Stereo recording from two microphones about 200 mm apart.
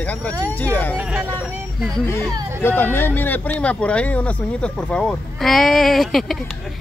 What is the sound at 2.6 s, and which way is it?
Speech, 10° left (ahead or behind).